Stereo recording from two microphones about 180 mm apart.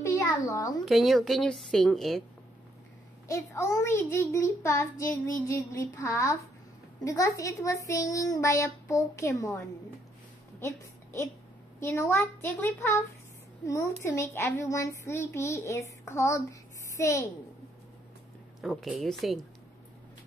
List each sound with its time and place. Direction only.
0.0 s a sound: 15° left (ahead or behind)
0.8 s a woman's voice: centre (ahead or behind)
3.3 s a woman's voice: 15° left (ahead or behind)
14.0 s speech: 15° left (ahead or behind)
18.6 s a woman's voice: centre (ahead or behind)